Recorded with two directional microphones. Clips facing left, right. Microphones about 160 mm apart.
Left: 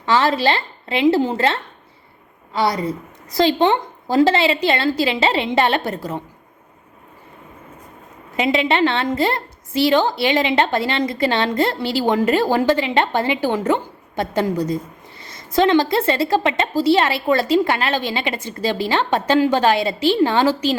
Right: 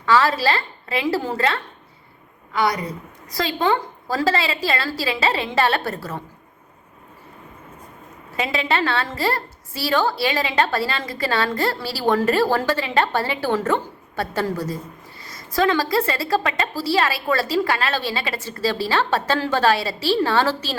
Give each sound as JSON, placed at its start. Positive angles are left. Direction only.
{"t": 0.0, "sound": "a woman's voice", "side_deg": 25}
{"t": 8.4, "sound": "a woman's voice", "side_deg": 20}